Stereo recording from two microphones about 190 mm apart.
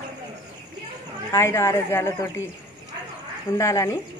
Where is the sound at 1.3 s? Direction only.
15° left (ahead or behind).